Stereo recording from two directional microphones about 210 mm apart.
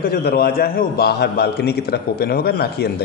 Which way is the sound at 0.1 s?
45° left (ahead or behind).